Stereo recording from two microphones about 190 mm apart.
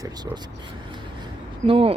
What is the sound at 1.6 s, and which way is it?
Speech, 30° right (ahead or behind).